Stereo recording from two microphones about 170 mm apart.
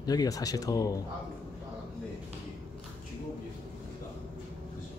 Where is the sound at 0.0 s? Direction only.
20° left (ahead or behind).